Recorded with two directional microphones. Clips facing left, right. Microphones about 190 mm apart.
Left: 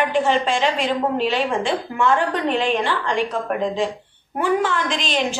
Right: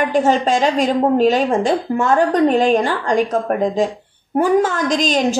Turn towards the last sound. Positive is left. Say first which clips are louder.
# right 6 dB
turn(degrees=-40)  # may be behind; listen again after turning